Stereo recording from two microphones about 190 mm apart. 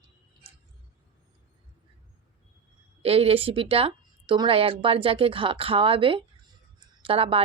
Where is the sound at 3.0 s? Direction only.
30° right (ahead or behind).